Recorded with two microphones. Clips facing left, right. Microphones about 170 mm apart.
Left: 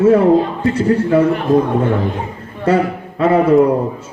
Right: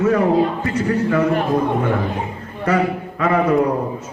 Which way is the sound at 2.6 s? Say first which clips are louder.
Left 4 dB; 30° left (ahead or behind).